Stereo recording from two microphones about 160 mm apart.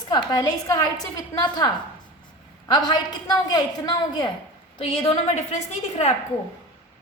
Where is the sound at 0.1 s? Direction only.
25° left (ahead or behind).